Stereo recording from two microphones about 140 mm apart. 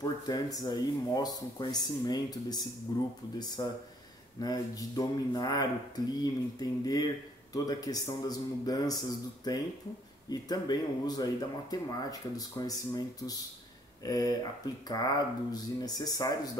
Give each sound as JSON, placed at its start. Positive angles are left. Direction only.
{"t": 0.0, "sound": "speech", "side_deg": 25}